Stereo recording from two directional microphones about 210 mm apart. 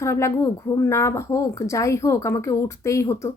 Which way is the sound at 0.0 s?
15° left (ahead or behind).